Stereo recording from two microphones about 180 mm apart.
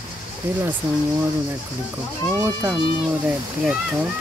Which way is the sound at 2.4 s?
20° right (ahead or behind).